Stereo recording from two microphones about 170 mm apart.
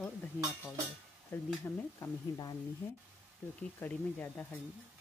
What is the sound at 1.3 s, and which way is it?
Speech, 10° left (ahead or behind).